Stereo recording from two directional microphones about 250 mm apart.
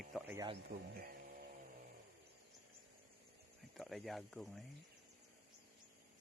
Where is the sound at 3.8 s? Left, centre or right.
Centre.